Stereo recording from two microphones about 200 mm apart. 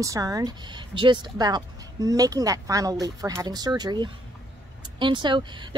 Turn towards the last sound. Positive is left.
turn(degrees=-25)  # may be behind; listen again after turning